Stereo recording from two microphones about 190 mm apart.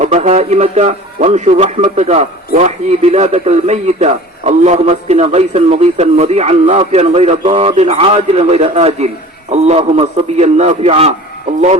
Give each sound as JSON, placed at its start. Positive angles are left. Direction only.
{"t": 0.0, "sound": "speech", "side_deg": -35}